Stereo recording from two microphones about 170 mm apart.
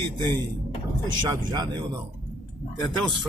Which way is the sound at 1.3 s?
25° right (ahead or behind).